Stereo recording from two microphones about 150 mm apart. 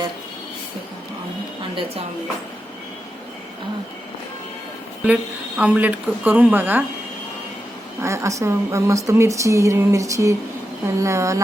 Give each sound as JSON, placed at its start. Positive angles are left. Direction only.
{"t": 5.0, "sound": "speech", "side_deg": -5}
{"t": 8.0, "sound": "speech", "side_deg": -20}